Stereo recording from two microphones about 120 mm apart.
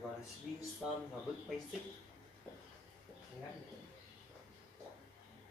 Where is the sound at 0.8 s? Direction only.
Centre (ahead or behind).